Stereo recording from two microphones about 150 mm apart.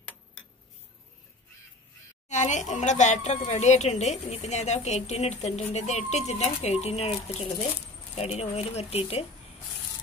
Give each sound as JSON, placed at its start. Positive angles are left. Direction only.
{"t": 2.2, "sound": "speech", "side_deg": 50}